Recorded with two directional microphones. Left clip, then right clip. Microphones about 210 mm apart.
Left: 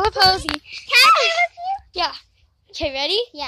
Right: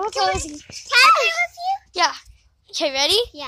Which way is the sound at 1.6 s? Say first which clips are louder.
Right 2 dB; 30° left (ahead or behind).